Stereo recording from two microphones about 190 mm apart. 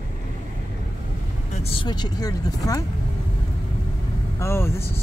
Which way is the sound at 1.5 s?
30° left (ahead or behind).